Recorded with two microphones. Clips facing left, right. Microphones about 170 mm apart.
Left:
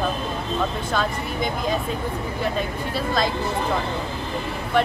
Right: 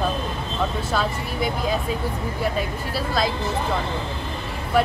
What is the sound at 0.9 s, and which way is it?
Speech, 5° right (ahead or behind).